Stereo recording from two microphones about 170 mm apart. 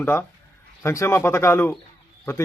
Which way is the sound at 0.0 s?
15° left (ahead or behind).